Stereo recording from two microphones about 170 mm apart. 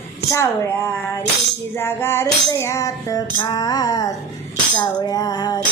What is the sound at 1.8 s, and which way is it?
Music, 15° left (ahead or behind).